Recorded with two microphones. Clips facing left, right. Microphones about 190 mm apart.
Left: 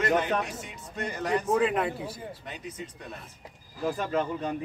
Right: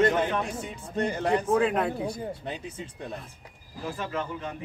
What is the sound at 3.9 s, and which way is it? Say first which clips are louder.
Speech: left 2 dB; 35° left (ahead or behind).